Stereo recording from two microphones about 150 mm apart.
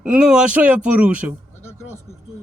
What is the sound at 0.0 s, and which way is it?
A man's voice, 10° right (ahead or behind).